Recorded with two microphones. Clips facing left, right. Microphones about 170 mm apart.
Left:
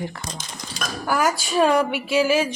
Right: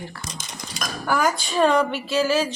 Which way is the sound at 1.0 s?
5° left (ahead or behind).